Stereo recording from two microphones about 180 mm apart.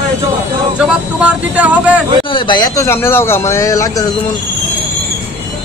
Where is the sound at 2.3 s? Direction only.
25° left (ahead or behind).